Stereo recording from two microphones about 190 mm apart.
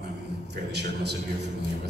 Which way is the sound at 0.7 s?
60° right (ahead or behind).